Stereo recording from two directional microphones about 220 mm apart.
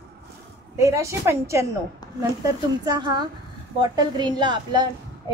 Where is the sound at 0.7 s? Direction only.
15° right (ahead or behind).